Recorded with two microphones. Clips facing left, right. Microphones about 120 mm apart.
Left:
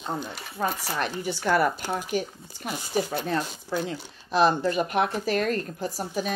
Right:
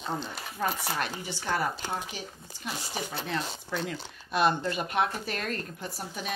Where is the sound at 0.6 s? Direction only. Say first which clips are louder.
Left 3 dB; 40° left (ahead or behind).